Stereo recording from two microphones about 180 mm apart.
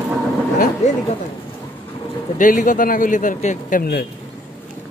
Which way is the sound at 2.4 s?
45° left (ahead or behind).